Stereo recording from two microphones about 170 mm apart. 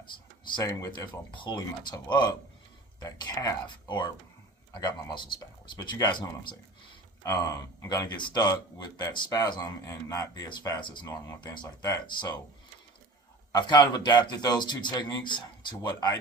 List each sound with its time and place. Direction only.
0.0 s speech: 25° left (ahead or behind)
13.5 s speech: 25° left (ahead or behind)